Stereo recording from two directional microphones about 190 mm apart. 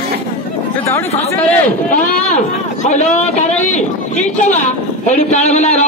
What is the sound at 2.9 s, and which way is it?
A man's voice, 40° left (ahead or behind).